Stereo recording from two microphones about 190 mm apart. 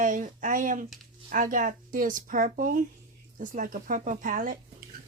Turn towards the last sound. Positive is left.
turn(degrees=-45)  # may be behind; listen again after turning